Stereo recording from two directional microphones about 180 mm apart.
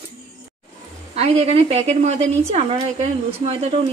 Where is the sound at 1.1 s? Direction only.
35° right (ahead or behind).